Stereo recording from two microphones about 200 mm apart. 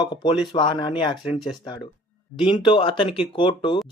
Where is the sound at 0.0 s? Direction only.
20° left (ahead or behind).